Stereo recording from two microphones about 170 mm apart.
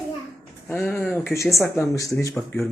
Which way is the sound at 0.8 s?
5° left (ahead or behind).